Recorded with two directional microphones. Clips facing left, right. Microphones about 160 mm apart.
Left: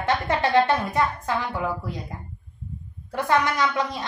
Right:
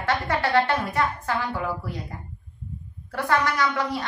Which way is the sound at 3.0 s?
20° left (ahead or behind).